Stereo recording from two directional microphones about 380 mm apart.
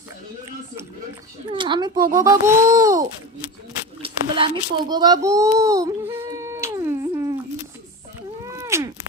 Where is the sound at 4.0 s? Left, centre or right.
Centre.